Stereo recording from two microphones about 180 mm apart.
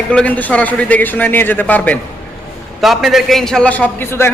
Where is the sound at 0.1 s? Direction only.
10° left (ahead or behind).